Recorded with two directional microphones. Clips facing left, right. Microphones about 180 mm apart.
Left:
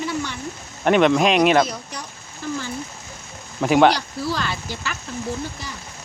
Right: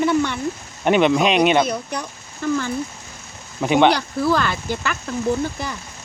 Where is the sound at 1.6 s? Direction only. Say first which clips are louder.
Right 7 dB; 60° right (ahead or behind).